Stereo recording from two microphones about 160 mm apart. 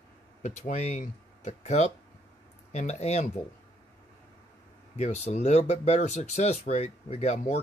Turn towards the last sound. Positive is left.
turn(degrees=45)  # may be behind; listen again after turning